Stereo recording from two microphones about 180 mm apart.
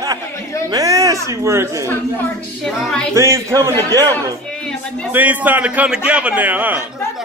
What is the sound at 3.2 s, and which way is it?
Speech, 15° right (ahead or behind).